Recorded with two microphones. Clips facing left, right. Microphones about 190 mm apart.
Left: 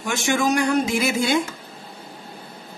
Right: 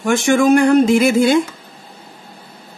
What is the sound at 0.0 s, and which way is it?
Speech, 55° right (ahead or behind).